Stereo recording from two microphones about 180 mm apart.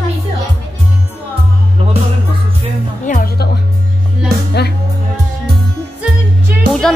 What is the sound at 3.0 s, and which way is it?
Music, 50° left (ahead or behind).